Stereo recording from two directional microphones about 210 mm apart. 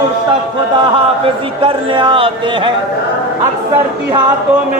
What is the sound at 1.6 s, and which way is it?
A man's voice, 25° right (ahead or behind).